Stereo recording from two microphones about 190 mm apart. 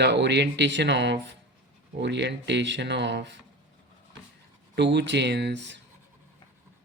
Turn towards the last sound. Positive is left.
turn(degrees=-65)  # may be behind; listen again after turning